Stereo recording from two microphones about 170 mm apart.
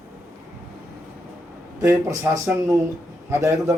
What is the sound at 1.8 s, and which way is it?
Speech, 15° right (ahead or behind).